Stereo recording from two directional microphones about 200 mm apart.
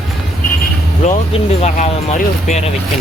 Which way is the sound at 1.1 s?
30° left (ahead or behind).